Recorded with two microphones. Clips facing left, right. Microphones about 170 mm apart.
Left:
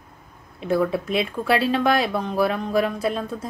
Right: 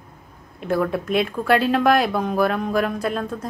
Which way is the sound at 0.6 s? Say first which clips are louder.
Even; centre (ahead or behind).